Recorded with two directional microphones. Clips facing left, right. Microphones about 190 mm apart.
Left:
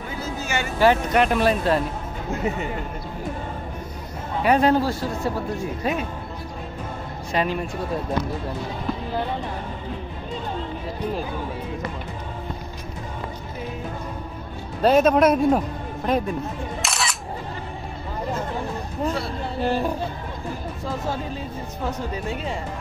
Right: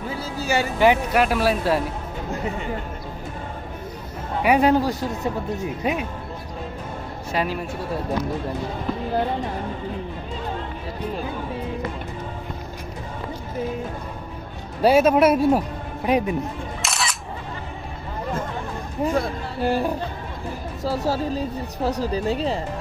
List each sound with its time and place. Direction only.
0.1 s a sound: 35° right (ahead or behind)
1.1 s speech: 5° right (ahead or behind)
4.4 s speech: 10° right (ahead or behind)
7.3 s speech: 5° right (ahead or behind)
14.8 s a man's voice: 10° right (ahead or behind)
16.8 s single-lens reflex camera: centre (ahead or behind)
19.0 s speech: 10° right (ahead or behind)
20.8 s a woman's voice: 35° right (ahead or behind)